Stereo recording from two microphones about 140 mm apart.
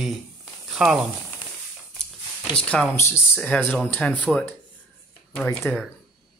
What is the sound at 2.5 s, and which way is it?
Speech, 10° left (ahead or behind).